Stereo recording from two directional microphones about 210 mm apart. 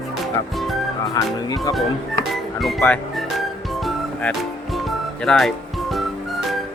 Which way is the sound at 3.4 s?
Centre (ahead or behind).